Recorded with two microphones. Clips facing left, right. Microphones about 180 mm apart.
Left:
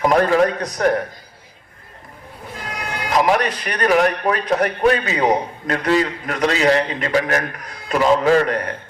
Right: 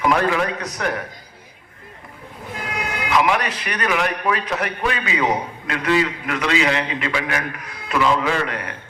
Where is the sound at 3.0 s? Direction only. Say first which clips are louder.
Left 3 dB; 35° left (ahead or behind).